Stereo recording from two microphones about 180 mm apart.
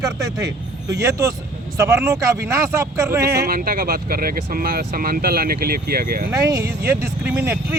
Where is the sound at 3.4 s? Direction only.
55° right (ahead or behind).